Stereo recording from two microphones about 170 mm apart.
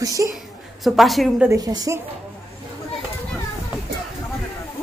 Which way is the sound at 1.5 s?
20° right (ahead or behind).